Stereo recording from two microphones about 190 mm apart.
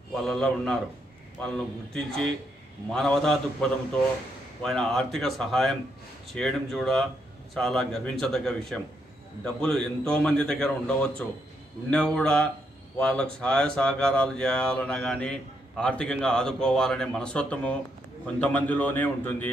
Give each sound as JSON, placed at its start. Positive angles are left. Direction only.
{"t": 0.1, "sound": "speech", "side_deg": 0}
{"t": 2.0, "sound": "a man's voice", "side_deg": 5}